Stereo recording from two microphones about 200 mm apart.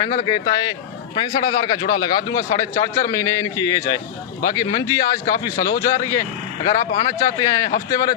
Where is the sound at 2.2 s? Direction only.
15° left (ahead or behind).